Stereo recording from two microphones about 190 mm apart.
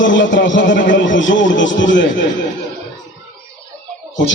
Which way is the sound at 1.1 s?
80° left.